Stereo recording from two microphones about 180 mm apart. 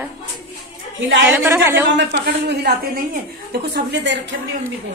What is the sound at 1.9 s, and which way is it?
A woman's voice, 65° right (ahead or behind).